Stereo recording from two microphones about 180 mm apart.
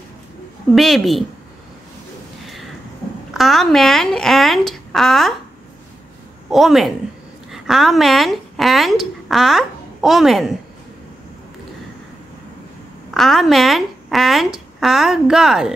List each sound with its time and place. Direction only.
0.7 s speech: centre (ahead or behind)
3.3 s speech: centre (ahead or behind)
6.5 s speech: centre (ahead or behind)
13.1 s speech: centre (ahead or behind)